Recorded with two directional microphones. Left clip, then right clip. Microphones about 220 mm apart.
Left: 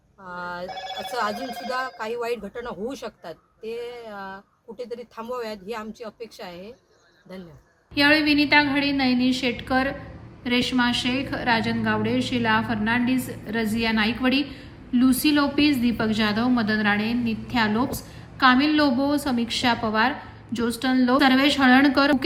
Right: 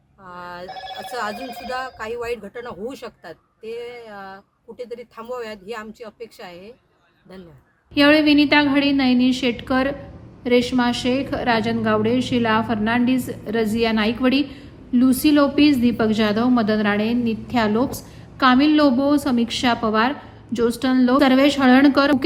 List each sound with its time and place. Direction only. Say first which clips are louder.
0.3 s speech: left 2 dB; 5° right (ahead or behind)
7.9 s speech: right 4 dB; centre (ahead or behind)